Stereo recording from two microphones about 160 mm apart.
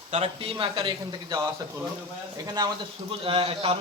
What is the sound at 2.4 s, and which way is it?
Speech, 25° right (ahead or behind).